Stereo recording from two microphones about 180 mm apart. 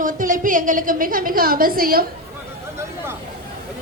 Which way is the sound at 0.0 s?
45° right (ahead or behind).